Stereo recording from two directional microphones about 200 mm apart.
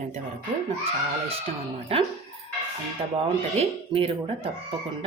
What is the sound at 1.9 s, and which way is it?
Speech, 30° right (ahead or behind).